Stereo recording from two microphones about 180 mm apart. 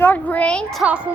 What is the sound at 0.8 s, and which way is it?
Speech, 5° right (ahead or behind).